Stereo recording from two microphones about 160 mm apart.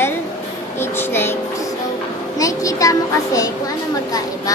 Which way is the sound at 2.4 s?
20° left (ahead or behind).